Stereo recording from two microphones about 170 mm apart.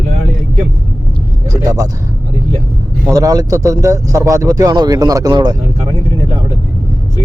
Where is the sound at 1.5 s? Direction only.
20° right (ahead or behind).